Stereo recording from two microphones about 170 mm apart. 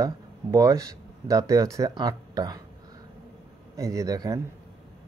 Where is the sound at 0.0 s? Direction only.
20° right (ahead or behind).